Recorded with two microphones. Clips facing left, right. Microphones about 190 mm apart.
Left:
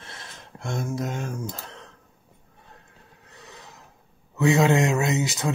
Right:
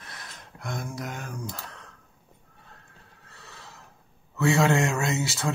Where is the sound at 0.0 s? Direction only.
25° left (ahead or behind).